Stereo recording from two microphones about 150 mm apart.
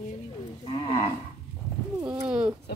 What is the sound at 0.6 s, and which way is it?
Cattle, 40° left (ahead or behind).